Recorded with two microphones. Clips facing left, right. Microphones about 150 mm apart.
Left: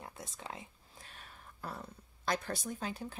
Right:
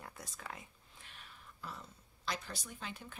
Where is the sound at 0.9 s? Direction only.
40° left (ahead or behind).